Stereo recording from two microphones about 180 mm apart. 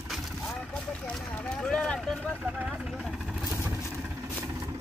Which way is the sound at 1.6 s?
5° left (ahead or behind).